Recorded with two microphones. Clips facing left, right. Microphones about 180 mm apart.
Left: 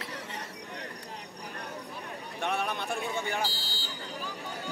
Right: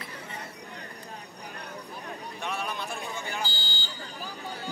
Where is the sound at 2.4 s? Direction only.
60° left (ahead or behind).